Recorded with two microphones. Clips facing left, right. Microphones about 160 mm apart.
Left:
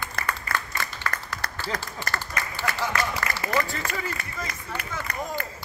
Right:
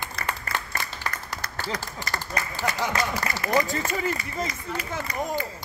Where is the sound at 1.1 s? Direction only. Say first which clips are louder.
Left 1 dB; 50° left (ahead or behind).